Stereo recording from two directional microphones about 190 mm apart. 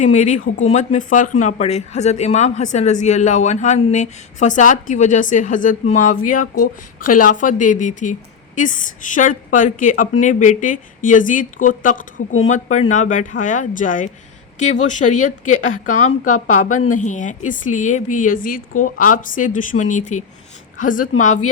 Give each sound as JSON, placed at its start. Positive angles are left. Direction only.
{"t": 0.0, "sound": "a woman's voice", "side_deg": 40}